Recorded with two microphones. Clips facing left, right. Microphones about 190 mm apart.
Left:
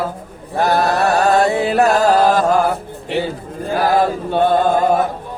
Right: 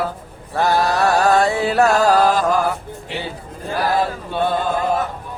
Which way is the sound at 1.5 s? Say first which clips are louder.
Left 2 dB; 20° left (ahead or behind).